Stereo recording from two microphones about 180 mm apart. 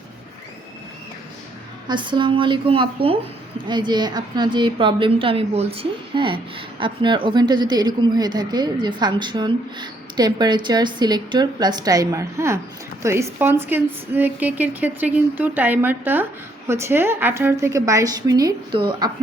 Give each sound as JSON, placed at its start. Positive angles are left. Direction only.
{"t": 1.9, "sound": "a woman's voice", "side_deg": -25}